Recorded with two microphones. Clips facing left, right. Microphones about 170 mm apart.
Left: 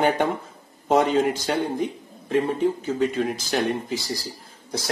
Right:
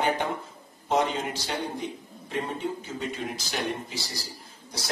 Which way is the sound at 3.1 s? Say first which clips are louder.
Left 8 dB; 50° left (ahead or behind).